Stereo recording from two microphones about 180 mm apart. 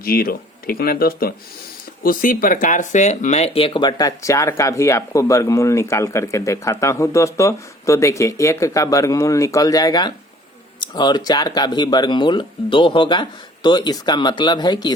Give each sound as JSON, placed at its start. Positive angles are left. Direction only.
{"t": 0.0, "sound": "speech", "side_deg": 55}